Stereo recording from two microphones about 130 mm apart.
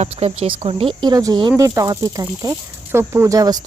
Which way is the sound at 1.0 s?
30° right (ahead or behind).